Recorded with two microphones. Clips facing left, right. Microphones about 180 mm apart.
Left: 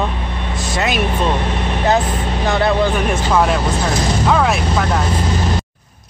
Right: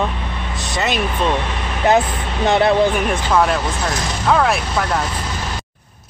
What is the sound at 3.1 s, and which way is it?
Speech, 5° left (ahead or behind).